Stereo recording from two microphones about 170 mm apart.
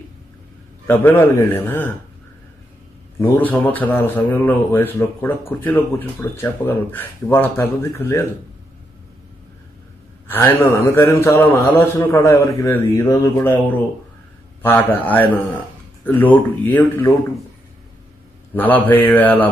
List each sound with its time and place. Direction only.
0.8 s a man's voice: 10° left (ahead or behind)
3.2 s a man's voice: 10° left (ahead or behind)
10.2 s a man's voice: 10° left (ahead or behind)
18.5 s a man's voice: 10° left (ahead or behind)